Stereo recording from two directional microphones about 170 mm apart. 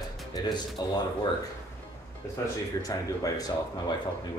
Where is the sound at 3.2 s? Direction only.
20° left (ahead or behind).